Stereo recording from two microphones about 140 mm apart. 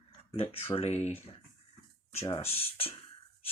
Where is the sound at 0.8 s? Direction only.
50° left (ahead or behind).